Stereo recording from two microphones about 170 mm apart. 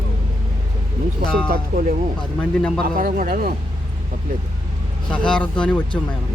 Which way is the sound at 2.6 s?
5° left (ahead or behind).